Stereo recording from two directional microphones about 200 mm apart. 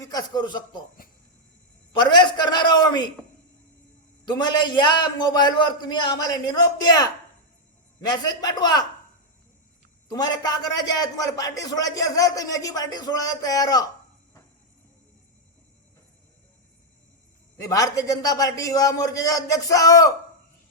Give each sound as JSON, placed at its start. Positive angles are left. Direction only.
{"t": 0.0, "sound": "a man's voice", "side_deg": 20}
{"t": 1.0, "sound": "a sound", "side_deg": 45}
{"t": 1.9, "sound": "a man's voice", "side_deg": 20}
{"t": 4.3, "sound": "a man's voice", "side_deg": 20}
{"t": 10.1, "sound": "a man's voice", "side_deg": 20}
{"t": 17.6, "sound": "a man's voice", "side_deg": 15}